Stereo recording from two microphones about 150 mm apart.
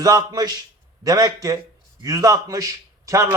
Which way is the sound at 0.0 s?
25° right (ahead or behind).